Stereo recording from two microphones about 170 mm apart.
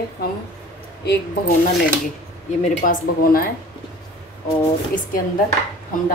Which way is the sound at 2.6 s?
40° left (ahead or behind).